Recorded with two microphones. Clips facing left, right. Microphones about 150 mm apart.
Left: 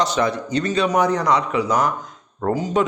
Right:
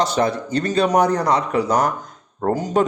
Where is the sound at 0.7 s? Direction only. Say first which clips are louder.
Right 2 dB; 40° right (ahead or behind).